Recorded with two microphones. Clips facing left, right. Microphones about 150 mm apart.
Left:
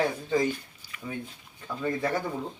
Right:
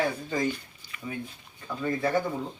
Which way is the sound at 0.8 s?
10° left (ahead or behind).